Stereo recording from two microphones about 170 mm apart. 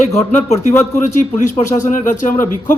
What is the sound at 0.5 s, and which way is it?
Speech, 15° left (ahead or behind).